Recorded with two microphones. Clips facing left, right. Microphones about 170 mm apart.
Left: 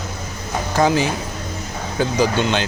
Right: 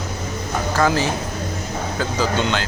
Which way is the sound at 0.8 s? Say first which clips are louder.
Left 2 dB; 15° left (ahead or behind).